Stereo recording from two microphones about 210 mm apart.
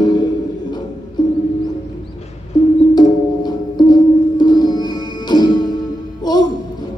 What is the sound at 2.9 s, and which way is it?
Music, 20° left (ahead or behind).